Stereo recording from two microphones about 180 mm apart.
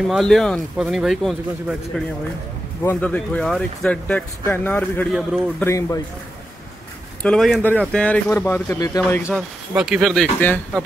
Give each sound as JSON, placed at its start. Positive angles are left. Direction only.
{"t": 0.0, "sound": "speech", "side_deg": 0}
{"t": 5.1, "sound": "speech", "side_deg": 0}
{"t": 5.7, "sound": "speech", "side_deg": 15}
{"t": 7.2, "sound": "speech", "side_deg": 0}
{"t": 9.3, "sound": "speech", "side_deg": 0}